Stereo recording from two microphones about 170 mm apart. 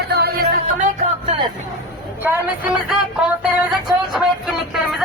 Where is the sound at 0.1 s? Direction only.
70° right (ahead or behind).